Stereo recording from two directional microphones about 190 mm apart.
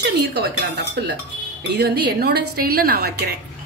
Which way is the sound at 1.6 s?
60° right (ahead or behind).